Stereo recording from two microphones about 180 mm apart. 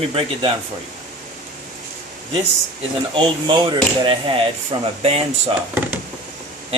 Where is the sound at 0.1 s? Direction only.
30° right (ahead or behind).